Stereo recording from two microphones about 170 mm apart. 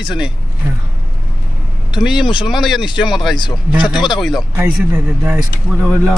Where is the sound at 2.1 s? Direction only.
30° left (ahead or behind).